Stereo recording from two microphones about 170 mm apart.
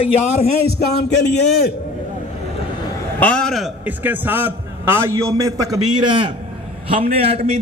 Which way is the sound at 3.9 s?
10° right (ahead or behind).